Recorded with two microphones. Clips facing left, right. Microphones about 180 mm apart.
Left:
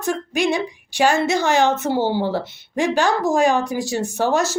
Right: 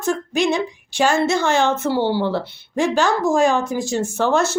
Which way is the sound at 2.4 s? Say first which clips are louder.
Right 1 dB; 15° left (ahead or behind).